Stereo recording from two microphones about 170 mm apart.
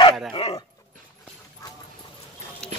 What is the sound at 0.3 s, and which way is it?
Speech, 30° left (ahead or behind).